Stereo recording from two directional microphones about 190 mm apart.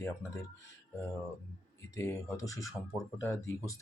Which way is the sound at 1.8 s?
15° left (ahead or behind).